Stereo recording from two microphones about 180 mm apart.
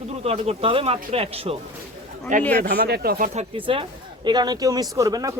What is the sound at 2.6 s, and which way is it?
Speech, 60° right (ahead or behind).